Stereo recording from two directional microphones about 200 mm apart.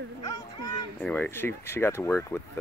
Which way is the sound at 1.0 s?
10° left (ahead or behind).